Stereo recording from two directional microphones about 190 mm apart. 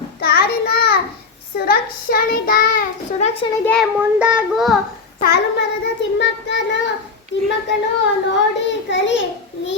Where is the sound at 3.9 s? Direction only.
5° right (ahead or behind).